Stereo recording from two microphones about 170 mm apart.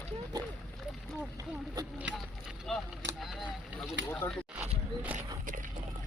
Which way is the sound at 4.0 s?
90° right.